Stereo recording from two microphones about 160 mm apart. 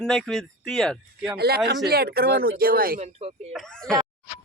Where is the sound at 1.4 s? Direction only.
80° right.